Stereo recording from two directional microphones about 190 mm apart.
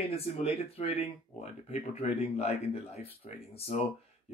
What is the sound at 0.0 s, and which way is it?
Speech, 30° left (ahead or behind).